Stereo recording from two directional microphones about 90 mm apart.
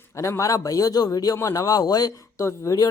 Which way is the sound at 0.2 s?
35° left (ahead or behind).